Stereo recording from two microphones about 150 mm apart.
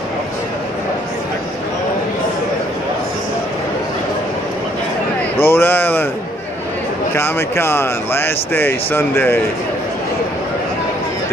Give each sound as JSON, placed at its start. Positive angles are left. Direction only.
{"t": 5.4, "sound": "speech", "side_deg": 15}
{"t": 7.2, "sound": "speech", "side_deg": 15}